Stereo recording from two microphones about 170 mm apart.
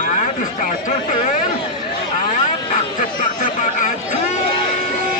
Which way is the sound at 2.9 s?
50° left (ahead or behind).